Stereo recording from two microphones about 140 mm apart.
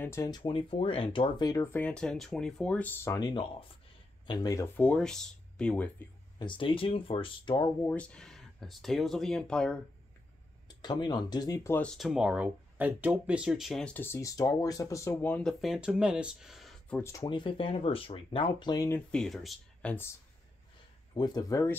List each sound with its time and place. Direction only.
0.0 s speech: 20° left (ahead or behind)
0.4 s speech: 40° left (ahead or behind)
1.8 s speech: 5° left (ahead or behind); by 4.6 s 25° left (ahead or behind)
4.7 s speech: 10° left (ahead or behind)
6.3 s speech: 35° left (ahead or behind)
7.8 s speech: 10° left (ahead or behind)
10.8 s speech: 35° left (ahead or behind)
11.8 s speech: centre (ahead or behind)
15.6 s speech: 5° right (ahead or behind)
16.9 s speech: 20° left (ahead or behind)
17.3 s speech: 35° left (ahead or behind)
19.1 s speech: centre (ahead or behind)
21.1 s speech: 30° left (ahead or behind)